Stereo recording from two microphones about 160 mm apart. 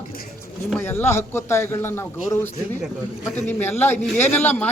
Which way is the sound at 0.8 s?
15° left (ahead or behind).